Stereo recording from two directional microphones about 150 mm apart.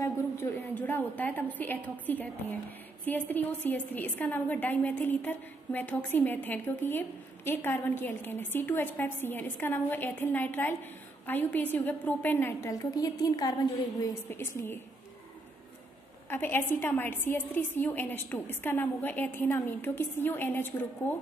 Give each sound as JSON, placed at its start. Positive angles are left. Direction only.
{"t": 0.0, "sound": "a woman's voice", "side_deg": 15}
{"t": 14.3, "sound": "a woman's voice", "side_deg": 15}
{"t": 16.3, "sound": "a woman's voice", "side_deg": 10}